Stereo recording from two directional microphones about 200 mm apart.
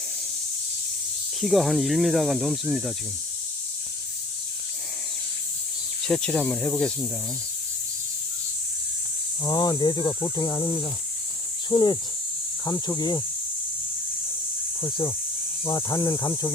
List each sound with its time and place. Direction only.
1.4 s speech: centre (ahead or behind)
6.1 s speech: 5° left (ahead or behind)
9.4 s speech: 20° left (ahead or behind)
14.8 s speech: 25° left (ahead or behind)